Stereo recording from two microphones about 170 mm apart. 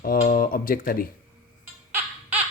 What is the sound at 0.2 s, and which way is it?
Speech, 55° left (ahead or behind).